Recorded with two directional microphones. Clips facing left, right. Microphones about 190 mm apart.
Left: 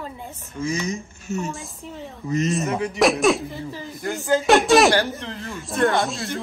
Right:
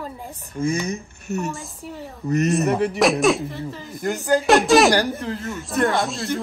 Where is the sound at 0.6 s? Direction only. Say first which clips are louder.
Right 2 dB; 60° right (ahead or behind).